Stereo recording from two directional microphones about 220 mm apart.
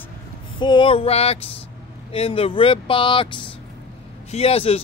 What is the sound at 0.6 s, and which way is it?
A man's voice, 20° left (ahead or behind).